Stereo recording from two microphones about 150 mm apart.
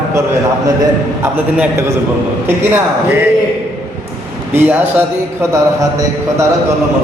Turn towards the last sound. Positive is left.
turn(degrees=-15)  # may be behind; listen again after turning